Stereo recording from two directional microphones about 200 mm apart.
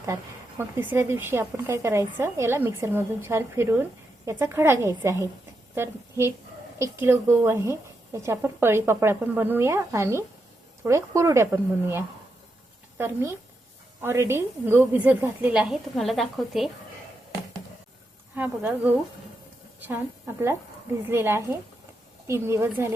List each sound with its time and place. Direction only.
0.8 s speech: 10° right (ahead or behind)
18.3 s speech: 10° right (ahead or behind)